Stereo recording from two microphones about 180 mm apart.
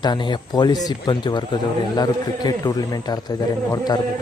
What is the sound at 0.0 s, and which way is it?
Speech, 25° left (ahead or behind).